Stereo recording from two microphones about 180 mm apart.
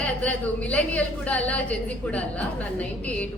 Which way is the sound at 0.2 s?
5° left (ahead or behind).